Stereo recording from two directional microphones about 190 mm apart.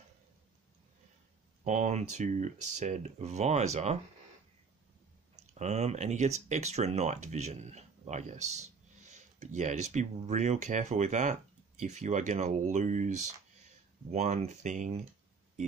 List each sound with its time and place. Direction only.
1.6 s speech: 35° right (ahead or behind)
5.5 s speech: 35° right (ahead or behind)